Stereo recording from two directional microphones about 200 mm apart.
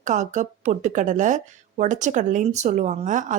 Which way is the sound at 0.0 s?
40° right (ahead or behind).